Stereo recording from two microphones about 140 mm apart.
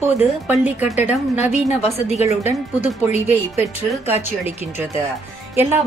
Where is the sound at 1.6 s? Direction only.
50° left (ahead or behind).